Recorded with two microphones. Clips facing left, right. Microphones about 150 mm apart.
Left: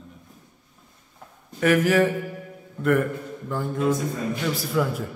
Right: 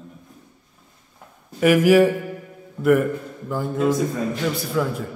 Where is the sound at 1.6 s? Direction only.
10° right (ahead or behind).